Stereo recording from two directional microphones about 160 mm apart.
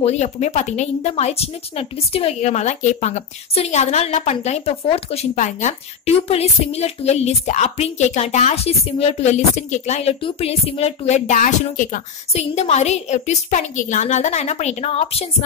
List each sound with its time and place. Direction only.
0.0 s speech: 45° left (ahead or behind)
12.3 s speech: 40° left (ahead or behind)